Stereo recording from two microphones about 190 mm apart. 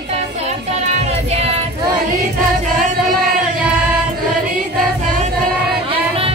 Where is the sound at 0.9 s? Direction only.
35° right (ahead or behind).